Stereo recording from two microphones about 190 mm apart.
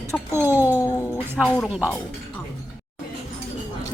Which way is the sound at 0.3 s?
10° right (ahead or behind).